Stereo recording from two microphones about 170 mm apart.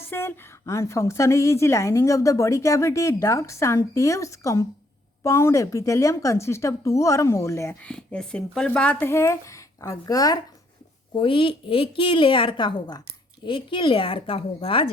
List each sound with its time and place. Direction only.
0.1 s a woman's voice: 15° left (ahead or behind); by 14.9 s 30° left (ahead or behind)